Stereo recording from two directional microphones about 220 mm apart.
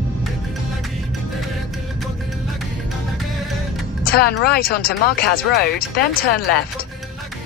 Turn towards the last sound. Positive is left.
turn(degrees=45)  # may be behind; listen again after turning